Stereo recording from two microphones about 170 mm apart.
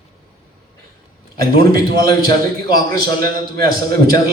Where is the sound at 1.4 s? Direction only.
60° right (ahead or behind).